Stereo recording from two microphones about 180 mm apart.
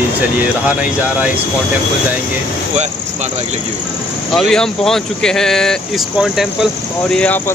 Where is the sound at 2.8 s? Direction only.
40° right (ahead or behind).